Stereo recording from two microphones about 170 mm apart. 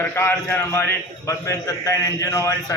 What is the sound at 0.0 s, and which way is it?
A man's voice, 15° left (ahead or behind).